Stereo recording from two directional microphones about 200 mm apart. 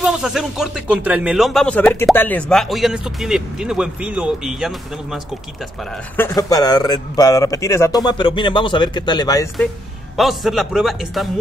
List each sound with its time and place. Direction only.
0.0 s speech: centre (ahead or behind)
6.1 s speech: 15° left (ahead or behind)
10.1 s speech: centre (ahead or behind)